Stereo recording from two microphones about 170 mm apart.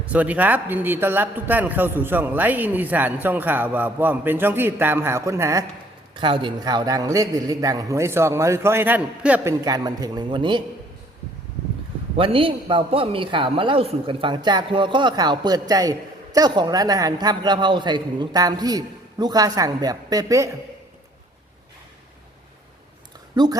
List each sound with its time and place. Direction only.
0.0 s a man's voice: 10° right (ahead or behind)
6.1 s a man's voice: 30° right (ahead or behind)
12.1 s a man's voice: 30° right (ahead or behind)
23.3 s a woman's voice: 25° right (ahead or behind)